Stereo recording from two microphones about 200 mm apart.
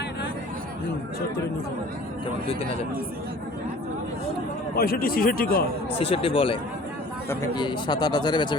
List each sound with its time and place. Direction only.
4.7 s speech: 50° left (ahead or behind)
6.0 s speech: 30° left (ahead or behind)